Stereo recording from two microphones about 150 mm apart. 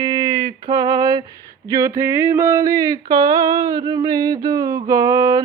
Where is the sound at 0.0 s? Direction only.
35° right (ahead or behind).